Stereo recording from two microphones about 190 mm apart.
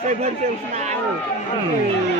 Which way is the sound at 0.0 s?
35° right (ahead or behind).